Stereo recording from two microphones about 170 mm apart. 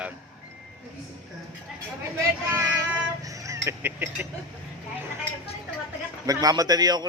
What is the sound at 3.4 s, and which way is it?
Honk, 15° right (ahead or behind).